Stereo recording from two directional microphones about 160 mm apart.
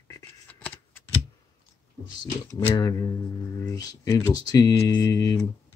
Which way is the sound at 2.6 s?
20° left (ahead or behind).